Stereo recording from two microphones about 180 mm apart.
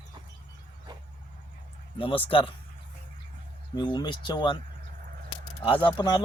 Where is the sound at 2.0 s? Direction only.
30° left (ahead or behind).